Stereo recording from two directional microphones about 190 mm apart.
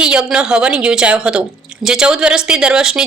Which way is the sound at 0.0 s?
5° right (ahead or behind).